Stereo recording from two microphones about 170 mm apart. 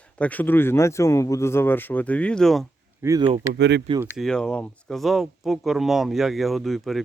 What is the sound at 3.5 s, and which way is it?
Speech, 80° right.